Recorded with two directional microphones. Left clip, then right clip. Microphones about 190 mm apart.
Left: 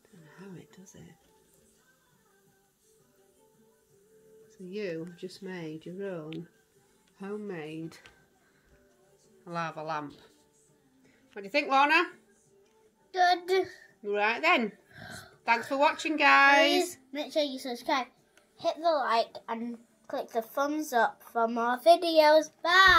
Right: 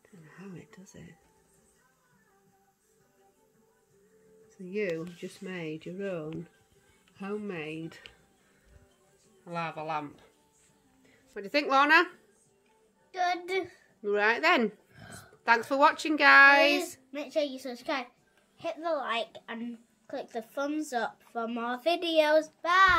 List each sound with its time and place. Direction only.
0.4 s whispering: 25° right (ahead or behind)
4.6 s a woman's voice: 20° right (ahead or behind)
9.4 s child singing: 5° right (ahead or behind)
11.3 s a woman's voice: 25° right (ahead or behind)
13.1 s child singing: 5° right (ahead or behind)
14.0 s a woman's voice: 25° right (ahead or behind)
15.0 s a sound: 10° right (ahead or behind)
15.4 s a woman's voice: 30° right (ahead or behind); by 22.9 s 15° right (ahead or behind)